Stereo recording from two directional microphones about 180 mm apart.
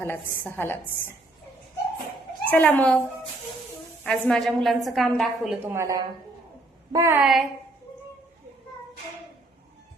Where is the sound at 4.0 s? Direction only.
5° left (ahead or behind).